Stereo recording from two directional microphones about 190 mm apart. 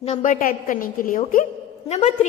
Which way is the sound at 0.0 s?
40° left (ahead or behind).